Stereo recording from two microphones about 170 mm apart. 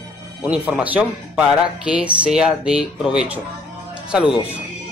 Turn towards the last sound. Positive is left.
turn(degrees=-5)  # may be behind; listen again after turning